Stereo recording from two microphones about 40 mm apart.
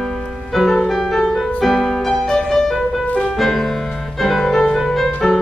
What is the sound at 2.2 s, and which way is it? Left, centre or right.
Music, centre.